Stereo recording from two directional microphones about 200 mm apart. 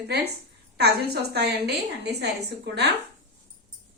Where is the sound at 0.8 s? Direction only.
55° right (ahead or behind).